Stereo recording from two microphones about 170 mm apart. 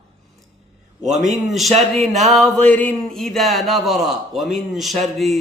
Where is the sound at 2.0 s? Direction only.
40° right (ahead or behind).